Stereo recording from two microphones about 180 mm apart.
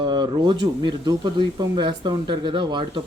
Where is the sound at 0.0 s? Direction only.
25° right (ahead or behind).